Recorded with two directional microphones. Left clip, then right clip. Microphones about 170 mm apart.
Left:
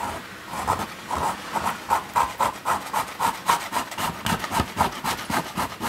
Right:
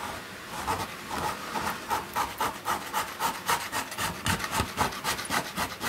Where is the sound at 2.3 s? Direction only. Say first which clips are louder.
Left 6 dB; 15° left (ahead or behind).